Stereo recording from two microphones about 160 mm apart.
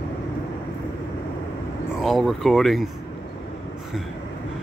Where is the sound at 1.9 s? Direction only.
Centre (ahead or behind).